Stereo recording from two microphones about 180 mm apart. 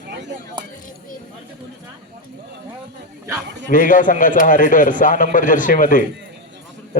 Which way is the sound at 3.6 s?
50° left (ahead or behind).